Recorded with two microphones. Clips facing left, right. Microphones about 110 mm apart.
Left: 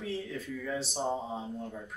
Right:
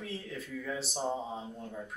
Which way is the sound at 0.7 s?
Centre (ahead or behind).